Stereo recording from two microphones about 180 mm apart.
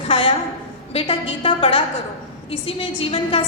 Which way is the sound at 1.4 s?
30° left (ahead or behind).